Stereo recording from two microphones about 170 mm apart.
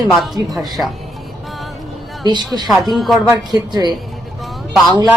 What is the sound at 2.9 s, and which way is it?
Speech, centre (ahead or behind).